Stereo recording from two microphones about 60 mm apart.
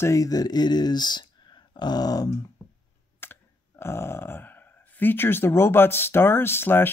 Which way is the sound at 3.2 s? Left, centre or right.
Left.